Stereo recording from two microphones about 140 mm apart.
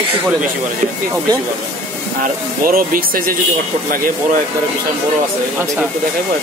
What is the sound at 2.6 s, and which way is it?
Speech, 90° right.